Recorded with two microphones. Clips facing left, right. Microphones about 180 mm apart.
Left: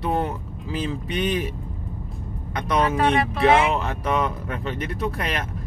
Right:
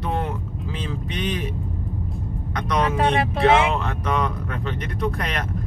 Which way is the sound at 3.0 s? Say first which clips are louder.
Right 1 dB; 25° right (ahead or behind).